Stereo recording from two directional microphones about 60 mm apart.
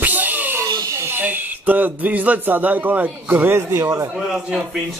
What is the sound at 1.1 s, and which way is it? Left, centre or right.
Speech, right.